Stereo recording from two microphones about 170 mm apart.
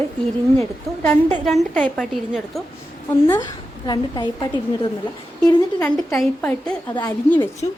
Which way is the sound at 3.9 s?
25° left (ahead or behind).